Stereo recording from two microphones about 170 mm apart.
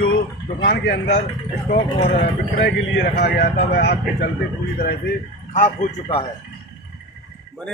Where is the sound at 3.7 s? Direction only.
70° left (ahead or behind).